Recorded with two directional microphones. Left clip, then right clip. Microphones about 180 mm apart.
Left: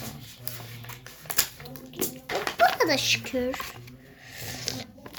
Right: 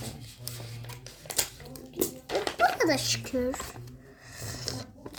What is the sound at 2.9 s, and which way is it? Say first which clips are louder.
Speech: left 3 dB; 20° right (ahead or behind).